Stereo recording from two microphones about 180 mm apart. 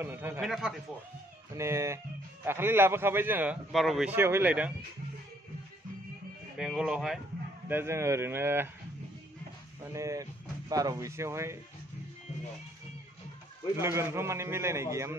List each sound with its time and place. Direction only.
0.0 s a man's voice: 10° right (ahead or behind)
1.6 s a man's voice: 15° right (ahead or behind)
3.7 s a man's voice: centre (ahead or behind)
6.6 s speech: 5° right (ahead or behind)
7.6 s a man's voice: 15° right (ahead or behind)
9.8 s a man's voice: 15° right (ahead or behind)
13.7 s a man's voice: 15° right (ahead or behind)